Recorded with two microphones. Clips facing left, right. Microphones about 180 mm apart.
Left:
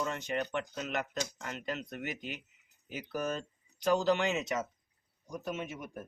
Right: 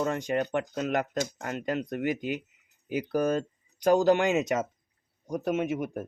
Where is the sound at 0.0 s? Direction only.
45° right (ahead or behind).